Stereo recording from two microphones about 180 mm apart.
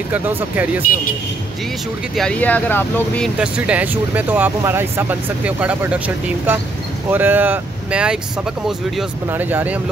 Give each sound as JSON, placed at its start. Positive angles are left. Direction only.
{"t": 0.1, "sound": "speech", "side_deg": -10}
{"t": 2.1, "sound": "speech", "side_deg": 5}
{"t": 3.3, "sound": "speech", "side_deg": -5}
{"t": 9.3, "sound": "speech", "side_deg": -10}